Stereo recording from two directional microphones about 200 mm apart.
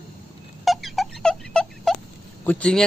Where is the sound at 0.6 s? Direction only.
Centre (ahead or behind).